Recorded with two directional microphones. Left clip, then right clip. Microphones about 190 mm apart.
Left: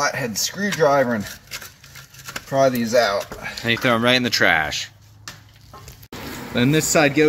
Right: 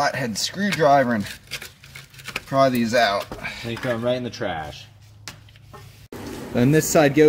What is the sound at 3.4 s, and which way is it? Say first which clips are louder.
Speech: left 7 dB; 25° left (ahead or behind).